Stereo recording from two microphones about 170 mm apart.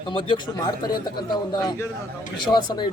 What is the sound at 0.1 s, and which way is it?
Speech, 30° left (ahead or behind).